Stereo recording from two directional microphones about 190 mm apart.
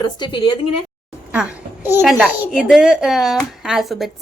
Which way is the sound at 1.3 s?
10° right (ahead or behind).